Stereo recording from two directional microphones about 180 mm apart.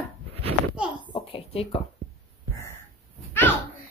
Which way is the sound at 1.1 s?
30° left (ahead or behind).